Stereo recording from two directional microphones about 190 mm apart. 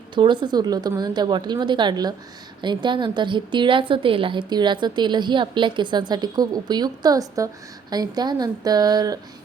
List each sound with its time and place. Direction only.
0.1 s a woman's voice: 25° right (ahead or behind)